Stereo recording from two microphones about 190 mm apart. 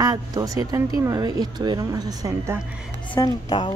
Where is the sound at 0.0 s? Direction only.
20° right (ahead or behind).